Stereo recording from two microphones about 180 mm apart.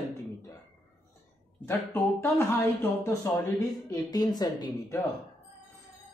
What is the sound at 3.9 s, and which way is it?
Speech, 20° left (ahead or behind).